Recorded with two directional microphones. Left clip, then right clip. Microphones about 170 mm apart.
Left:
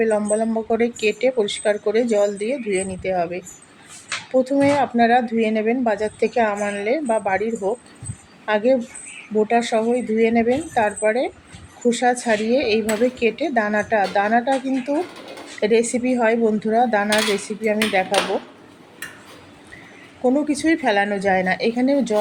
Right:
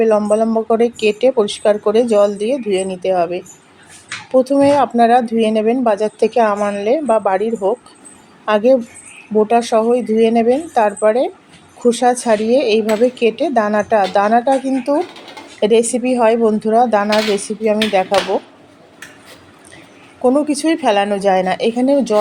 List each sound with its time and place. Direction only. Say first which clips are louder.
0.0 s speech: right 6 dB; 30° right (ahead or behind)
20.2 s speech: right 5 dB; 30° right (ahead or behind)